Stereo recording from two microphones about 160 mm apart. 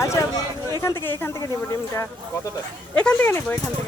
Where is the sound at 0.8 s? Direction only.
20° left (ahead or behind).